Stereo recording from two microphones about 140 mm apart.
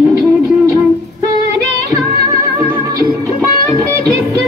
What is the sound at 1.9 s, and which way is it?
Music, 20° right (ahead or behind).